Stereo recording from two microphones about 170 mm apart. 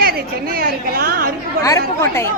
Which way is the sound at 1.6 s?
15° left (ahead or behind).